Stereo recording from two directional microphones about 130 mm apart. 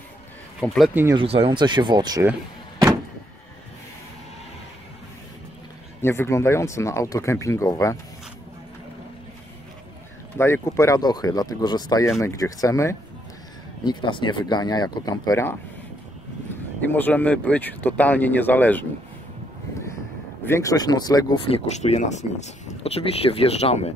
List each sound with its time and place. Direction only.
0.6 s speech: centre (ahead or behind)
1.1 s speech: 45° right (ahead or behind); by 2.2 s 30° right (ahead or behind)
5.9 s speech: 20° left (ahead or behind)
10.3 s speech: 20° left (ahead or behind)
13.8 s speech: 35° left (ahead or behind)
16.9 s speech: 10° left (ahead or behind)
20.4 s speech: 20° left (ahead or behind)
21.5 s speech: 60° left (ahead or behind)